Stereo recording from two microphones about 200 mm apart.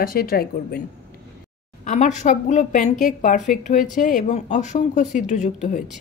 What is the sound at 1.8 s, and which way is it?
Speech, 35° left (ahead or behind).